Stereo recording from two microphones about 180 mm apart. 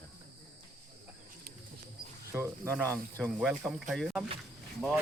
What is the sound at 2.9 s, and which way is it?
Speech, 10° left (ahead or behind).